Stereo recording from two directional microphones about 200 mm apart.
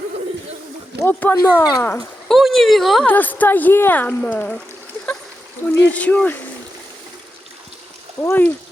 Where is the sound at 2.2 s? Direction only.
Centre (ahead or behind).